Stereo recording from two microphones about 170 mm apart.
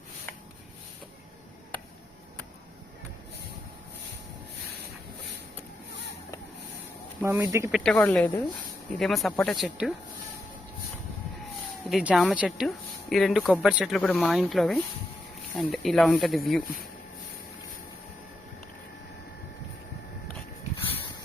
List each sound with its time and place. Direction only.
7.2 s speech: 15° right (ahead or behind)
7.7 s speech: 5° left (ahead or behind)
11.9 s speech: centre (ahead or behind)